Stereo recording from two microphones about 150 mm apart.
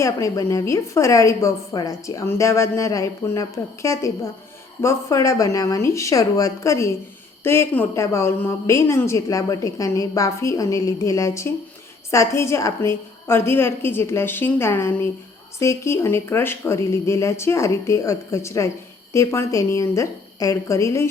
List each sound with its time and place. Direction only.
0.0 s a woman's voice: 20° left (ahead or behind)